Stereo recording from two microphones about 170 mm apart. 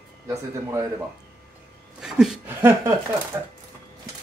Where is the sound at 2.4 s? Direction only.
15° right (ahead or behind).